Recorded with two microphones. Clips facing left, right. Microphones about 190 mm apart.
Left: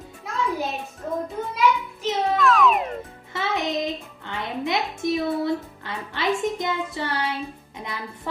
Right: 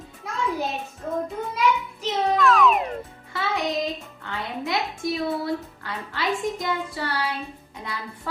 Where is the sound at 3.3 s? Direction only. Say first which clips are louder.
Left 1 dB; 20° left (ahead or behind).